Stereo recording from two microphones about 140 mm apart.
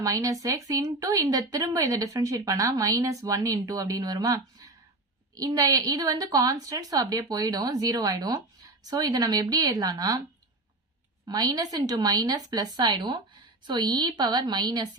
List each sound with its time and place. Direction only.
0.0 s speech: 25° right (ahead or behind)
11.3 s a woman's voice: 25° right (ahead or behind)